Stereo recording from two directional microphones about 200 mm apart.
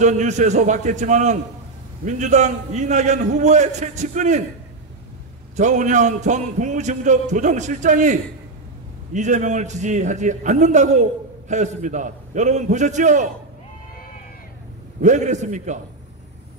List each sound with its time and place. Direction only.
0.0 s a man's voice: 35° right (ahead or behind)
5.6 s a man's voice: 35° right (ahead or behind)
15.0 s a man's voice: 35° right (ahead or behind)